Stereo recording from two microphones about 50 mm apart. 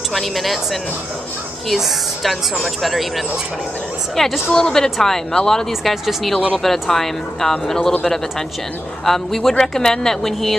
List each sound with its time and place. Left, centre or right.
0.1 s speech: centre
1.7 s speech: centre
4.5 s speech: centre
5.7 s speech: centre
9.0 s speech: centre